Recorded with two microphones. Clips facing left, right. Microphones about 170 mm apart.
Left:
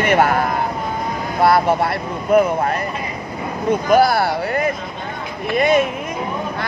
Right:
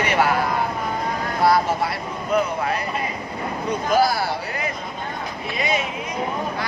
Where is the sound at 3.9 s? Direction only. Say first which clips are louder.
Left 4 dB; 60° left (ahead or behind).